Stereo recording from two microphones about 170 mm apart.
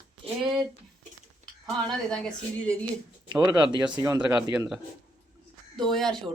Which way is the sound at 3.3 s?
5° right (ahead or behind).